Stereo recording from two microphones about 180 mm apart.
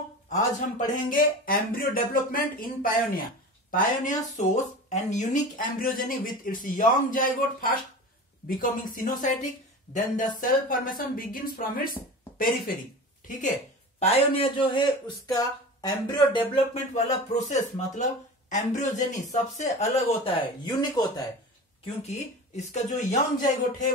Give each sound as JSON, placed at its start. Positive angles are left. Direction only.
{"t": 0.3, "sound": "speech", "side_deg": 50}
{"t": 13.9, "sound": "a man's voice", "side_deg": 35}
{"t": 21.8, "sound": "speech", "side_deg": 40}